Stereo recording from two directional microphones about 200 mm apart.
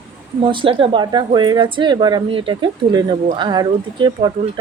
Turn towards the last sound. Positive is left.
turn(degrees=-20)  # may be behind; listen again after turning